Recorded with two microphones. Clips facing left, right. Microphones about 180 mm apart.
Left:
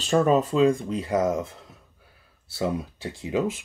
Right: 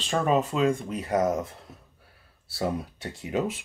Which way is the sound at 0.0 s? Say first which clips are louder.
Left 4 dB; 40° left (ahead or behind).